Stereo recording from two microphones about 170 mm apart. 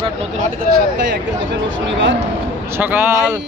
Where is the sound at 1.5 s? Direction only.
90° right.